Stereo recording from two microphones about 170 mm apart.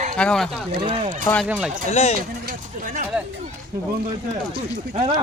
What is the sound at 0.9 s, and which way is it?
Speech, 35° right (ahead or behind).